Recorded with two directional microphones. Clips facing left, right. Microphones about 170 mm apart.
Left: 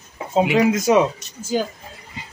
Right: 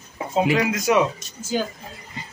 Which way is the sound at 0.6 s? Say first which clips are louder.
Left 4 dB; 25° left (ahead or behind).